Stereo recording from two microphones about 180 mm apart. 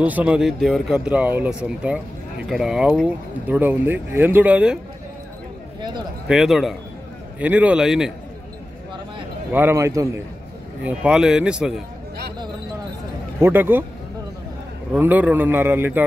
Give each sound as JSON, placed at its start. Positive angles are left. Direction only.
{"t": 0.0, "sound": "speech", "side_deg": -10}
{"t": 5.8, "sound": "a man's voice", "side_deg": -25}
{"t": 6.2, "sound": "speech", "side_deg": 0}
{"t": 9.5, "sound": "speech", "side_deg": -10}
{"t": 13.4, "sound": "speech", "side_deg": -10}
{"t": 15.0, "sound": "speech", "side_deg": -10}